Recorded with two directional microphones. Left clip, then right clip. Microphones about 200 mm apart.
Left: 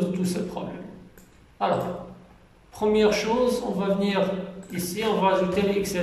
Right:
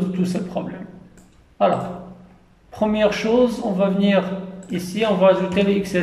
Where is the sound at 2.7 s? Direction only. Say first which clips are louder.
Right 2 dB; 40° right (ahead or behind).